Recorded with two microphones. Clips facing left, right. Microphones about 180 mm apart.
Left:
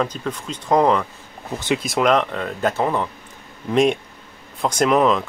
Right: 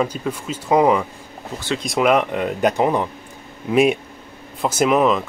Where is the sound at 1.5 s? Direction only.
20° left (ahead or behind).